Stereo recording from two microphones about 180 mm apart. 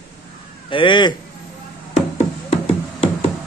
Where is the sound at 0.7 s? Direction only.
25° left (ahead or behind).